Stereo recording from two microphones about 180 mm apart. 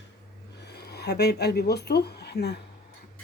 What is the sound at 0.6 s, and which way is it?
Speech, 65° left (ahead or behind).